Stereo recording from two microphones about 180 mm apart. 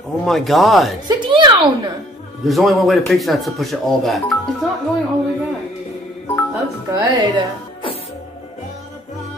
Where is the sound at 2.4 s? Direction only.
Centre (ahead or behind).